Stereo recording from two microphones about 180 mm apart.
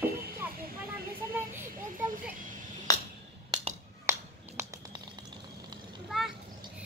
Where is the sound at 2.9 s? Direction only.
20° left (ahead or behind).